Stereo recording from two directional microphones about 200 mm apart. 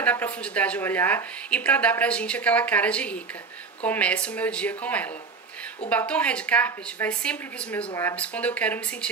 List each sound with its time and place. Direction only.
0.0 s a woman's voice: 10° left (ahead or behind)